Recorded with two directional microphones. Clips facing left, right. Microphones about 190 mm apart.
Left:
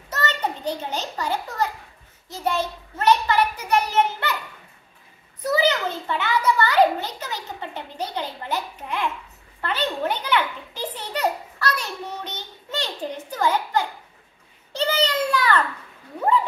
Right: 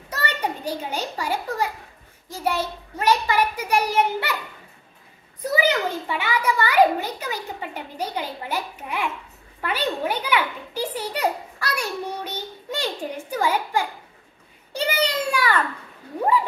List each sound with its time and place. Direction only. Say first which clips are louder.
0.1 s a child's voice: left 1 dB; 10° right (ahead or behind)
5.5 s a child's voice: even; 10° right (ahead or behind)